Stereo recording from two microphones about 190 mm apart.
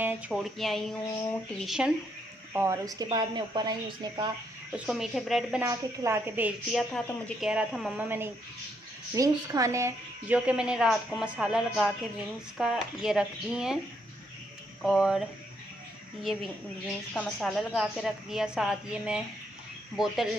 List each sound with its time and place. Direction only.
0.0 s a woman's voice: 5° right (ahead or behind)
2.5 s speech: 15° right (ahead or behind)
4.7 s a woman's voice: centre (ahead or behind)
5.6 s a woman's voice: 15° right (ahead or behind)
14.8 s a woman's voice: centre (ahead or behind)
16.8 s a woman's voice: centre (ahead or behind)